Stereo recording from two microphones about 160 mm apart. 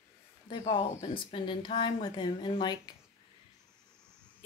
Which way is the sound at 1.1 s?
30° left (ahead or behind).